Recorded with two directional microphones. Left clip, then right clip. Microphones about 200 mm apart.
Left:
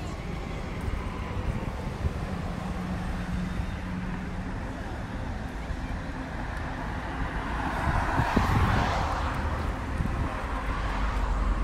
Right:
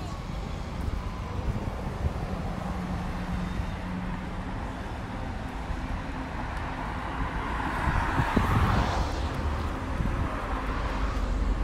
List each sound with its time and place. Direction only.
7.4 s vehicle: 5° right (ahead or behind)
8.1 s vehicle: 25° left (ahead or behind); by 8.9 s 45° left (ahead or behind)